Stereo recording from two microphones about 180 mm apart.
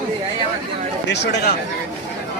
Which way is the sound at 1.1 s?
70° left (ahead or behind).